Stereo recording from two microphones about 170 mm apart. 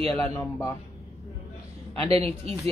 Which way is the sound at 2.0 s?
35° right (ahead or behind).